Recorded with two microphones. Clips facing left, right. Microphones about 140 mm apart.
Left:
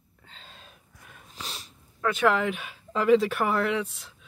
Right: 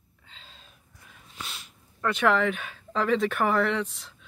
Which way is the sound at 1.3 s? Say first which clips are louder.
Left 1 dB; 35° left (ahead or behind).